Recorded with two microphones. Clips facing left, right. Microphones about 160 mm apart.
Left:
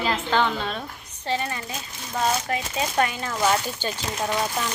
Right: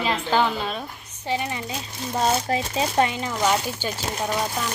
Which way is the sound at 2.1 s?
30° right (ahead or behind).